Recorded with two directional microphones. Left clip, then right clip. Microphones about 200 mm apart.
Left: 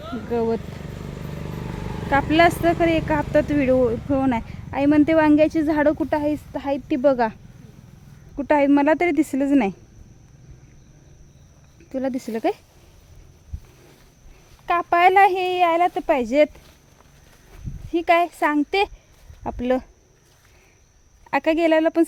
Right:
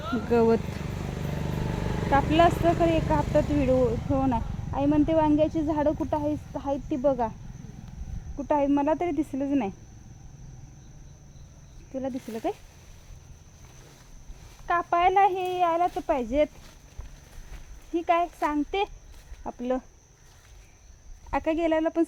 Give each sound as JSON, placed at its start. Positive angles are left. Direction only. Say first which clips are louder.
{"t": 0.3, "sound": "speech", "louder": "right 1 dB", "side_deg": -5}
{"t": 2.0, "sound": "speech", "louder": "left 4 dB", "side_deg": 25}
{"t": 8.4, "sound": "speech", "louder": "left 7 dB", "side_deg": 45}
{"t": 11.9, "sound": "speech", "louder": "left 7 dB", "side_deg": 55}
{"t": 14.7, "sound": "speech", "louder": "left 6 dB", "side_deg": 60}
{"t": 17.9, "sound": "speech", "louder": "left 6 dB", "side_deg": 55}
{"t": 21.2, "sound": "speech", "louder": "left 7 dB", "side_deg": 50}